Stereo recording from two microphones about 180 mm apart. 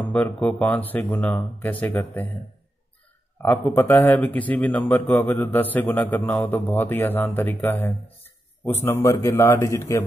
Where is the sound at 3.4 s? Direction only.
15° left (ahead or behind).